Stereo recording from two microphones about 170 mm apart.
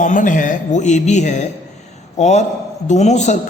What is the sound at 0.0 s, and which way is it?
A man's voice, 50° left (ahead or behind).